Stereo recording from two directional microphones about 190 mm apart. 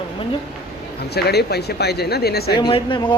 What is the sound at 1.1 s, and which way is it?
Speech, 60° left (ahead or behind).